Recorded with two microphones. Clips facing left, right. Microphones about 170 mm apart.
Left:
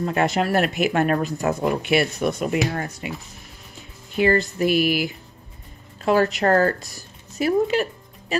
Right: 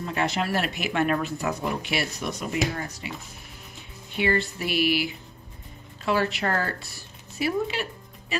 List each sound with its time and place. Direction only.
0.0 s speech: 50° left (ahead or behind)
4.2 s speech: 45° left (ahead or behind)